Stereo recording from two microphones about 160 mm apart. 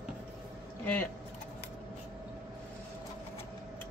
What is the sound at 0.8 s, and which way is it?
Speech, 10° left (ahead or behind).